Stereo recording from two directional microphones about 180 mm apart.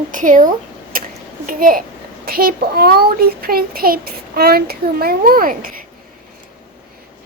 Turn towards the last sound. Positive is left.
turn(degrees=-50)  # may be behind; listen again after turning